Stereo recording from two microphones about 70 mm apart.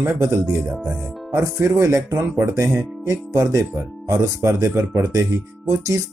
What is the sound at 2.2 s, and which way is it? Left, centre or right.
Speech, right.